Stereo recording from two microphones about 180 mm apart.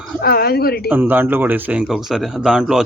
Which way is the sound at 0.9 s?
10° right (ahead or behind).